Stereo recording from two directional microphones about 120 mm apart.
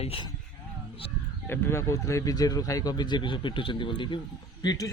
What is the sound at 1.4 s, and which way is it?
Speech, 20° left (ahead or behind).